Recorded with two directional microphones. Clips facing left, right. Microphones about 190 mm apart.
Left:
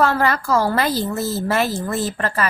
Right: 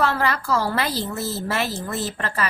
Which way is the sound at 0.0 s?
45° left (ahead or behind).